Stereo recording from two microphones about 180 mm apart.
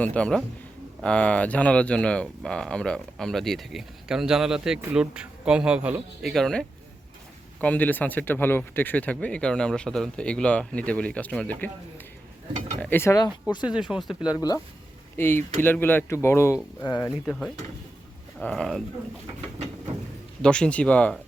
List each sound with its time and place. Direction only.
0.0 s speech: 5° left (ahead or behind)
12.8 s speech: 10° left (ahead or behind)
13.7 s speech: 5° right (ahead or behind)
14.3 s speech: 20° left (ahead or behind); by 18.8 s 5° left (ahead or behind)
20.4 s speech: 5° left (ahead or behind)